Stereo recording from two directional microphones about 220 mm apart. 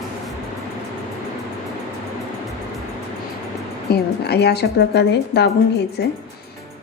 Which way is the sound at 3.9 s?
50° left (ahead or behind).